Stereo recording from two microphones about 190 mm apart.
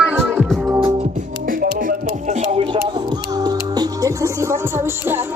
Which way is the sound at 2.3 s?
35° right (ahead or behind).